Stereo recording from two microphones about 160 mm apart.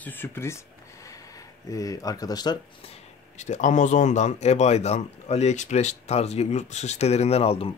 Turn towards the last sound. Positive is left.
turn(degrees=40)  # may be behind; listen again after turning